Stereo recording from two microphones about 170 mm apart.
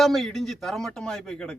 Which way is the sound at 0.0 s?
Centre (ahead or behind).